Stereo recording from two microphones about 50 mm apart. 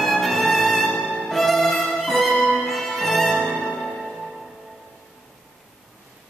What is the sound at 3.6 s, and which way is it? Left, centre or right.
Music, centre.